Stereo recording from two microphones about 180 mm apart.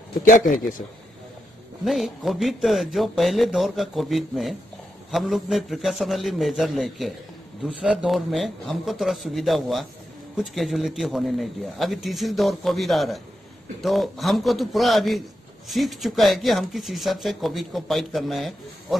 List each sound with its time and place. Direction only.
0.2 s a man's voice: 50° left (ahead or behind)
1.9 s speech: centre (ahead or behind)